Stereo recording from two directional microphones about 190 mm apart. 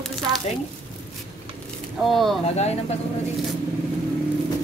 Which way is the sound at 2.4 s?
35° left (ahead or behind).